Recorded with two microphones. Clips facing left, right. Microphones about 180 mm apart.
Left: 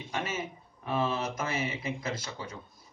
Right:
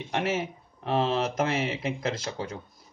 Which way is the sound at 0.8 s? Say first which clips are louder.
Right 5 dB; 70° right (ahead or behind).